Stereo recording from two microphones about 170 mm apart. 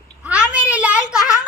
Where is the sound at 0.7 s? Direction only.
10° right (ahead or behind).